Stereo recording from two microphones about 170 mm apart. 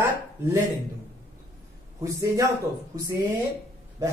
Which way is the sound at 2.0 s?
20° right (ahead or behind).